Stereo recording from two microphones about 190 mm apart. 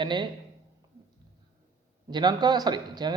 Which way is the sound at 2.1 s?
20° right (ahead or behind).